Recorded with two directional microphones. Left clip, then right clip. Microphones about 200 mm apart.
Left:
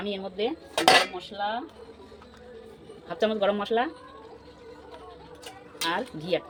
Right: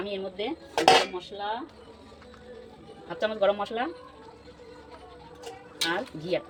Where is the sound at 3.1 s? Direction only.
55° left (ahead or behind).